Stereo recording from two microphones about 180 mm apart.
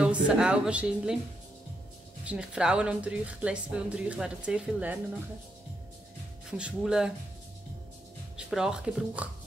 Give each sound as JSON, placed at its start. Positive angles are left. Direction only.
{"t": 0.0, "sound": "a woman's voice", "side_deg": -5}
{"t": 2.2, "sound": "a woman's voice", "side_deg": -5}
{"t": 6.5, "sound": "a woman's voice", "side_deg": -5}
{"t": 8.4, "sound": "a woman's voice", "side_deg": -5}